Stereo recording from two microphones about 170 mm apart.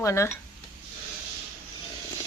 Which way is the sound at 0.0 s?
15° left (ahead or behind).